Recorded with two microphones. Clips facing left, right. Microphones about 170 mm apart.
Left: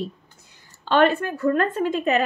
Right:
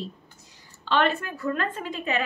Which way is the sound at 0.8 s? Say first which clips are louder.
Left 6 dB; 45° left (ahead or behind).